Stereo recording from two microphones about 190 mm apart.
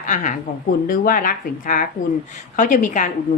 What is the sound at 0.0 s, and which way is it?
A woman's voice, 40° left (ahead or behind).